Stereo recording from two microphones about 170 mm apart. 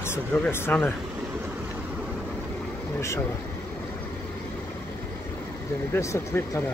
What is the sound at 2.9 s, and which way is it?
Speech, 15° left (ahead or behind).